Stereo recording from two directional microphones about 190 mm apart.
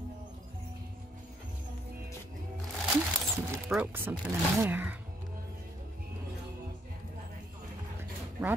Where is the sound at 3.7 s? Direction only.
10° right (ahead or behind).